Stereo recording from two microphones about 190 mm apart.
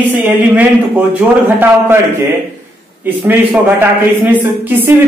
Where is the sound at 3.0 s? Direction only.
10° right (ahead or behind).